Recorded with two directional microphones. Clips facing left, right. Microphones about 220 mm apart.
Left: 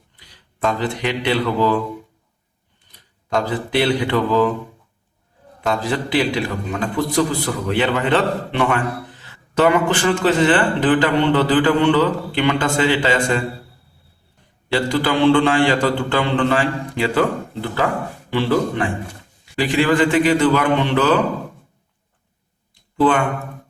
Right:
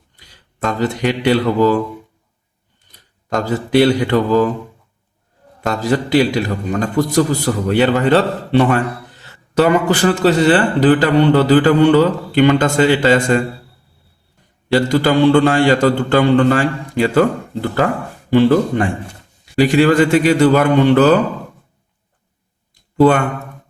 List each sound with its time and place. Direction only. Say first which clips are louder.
0.8 s a man's voice: right 5 dB; 45° right (ahead or behind)
3.2 s a man's voice: right 2 dB; 40° right (ahead or behind)
5.6 s a man's voice: right 4 dB; 40° right (ahead or behind)
14.7 s a man's voice: right 5 dB; 40° right (ahead or behind)
23.0 s speech: right 5 dB; 40° right (ahead or behind)